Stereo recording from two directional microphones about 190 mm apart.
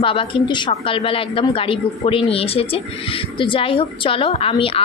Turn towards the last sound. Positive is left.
turn(degrees=30)  # may be behind; listen again after turning